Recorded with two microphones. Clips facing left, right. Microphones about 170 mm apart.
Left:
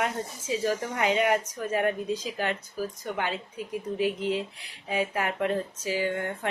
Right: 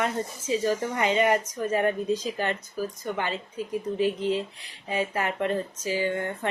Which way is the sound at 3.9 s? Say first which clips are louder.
Right 2 dB; 10° left (ahead or behind).